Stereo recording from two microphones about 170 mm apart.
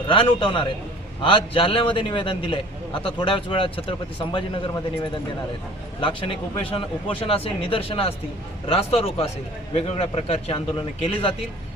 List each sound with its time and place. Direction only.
0.1 s a man's voice: 30° left (ahead or behind)
6.0 s a man's voice: 30° left (ahead or behind)